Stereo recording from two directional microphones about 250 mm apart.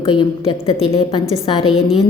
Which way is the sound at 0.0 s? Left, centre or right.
Left.